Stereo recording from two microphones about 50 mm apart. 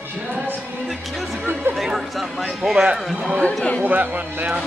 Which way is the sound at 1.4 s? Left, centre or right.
Right.